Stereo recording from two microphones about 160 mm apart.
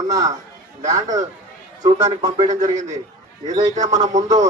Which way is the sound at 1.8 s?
45° right (ahead or behind).